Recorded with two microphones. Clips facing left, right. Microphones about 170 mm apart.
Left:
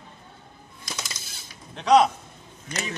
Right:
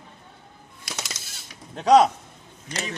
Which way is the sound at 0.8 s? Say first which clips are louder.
Right 1 dB; 75° right (ahead or behind).